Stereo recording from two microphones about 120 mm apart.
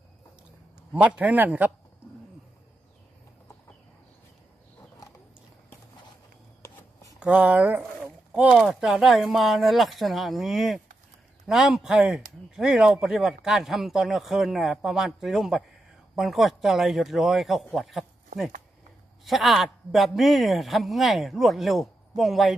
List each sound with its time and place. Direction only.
0.9 s a man's voice: 10° right (ahead or behind)
6.6 s a sound: 25° left (ahead or behind)
7.2 s speech: 15° right (ahead or behind)